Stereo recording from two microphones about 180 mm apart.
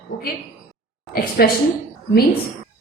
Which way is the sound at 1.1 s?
55° left (ahead or behind).